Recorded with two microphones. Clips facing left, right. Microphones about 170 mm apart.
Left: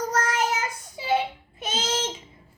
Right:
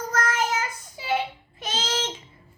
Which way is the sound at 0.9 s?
15° left (ahead or behind).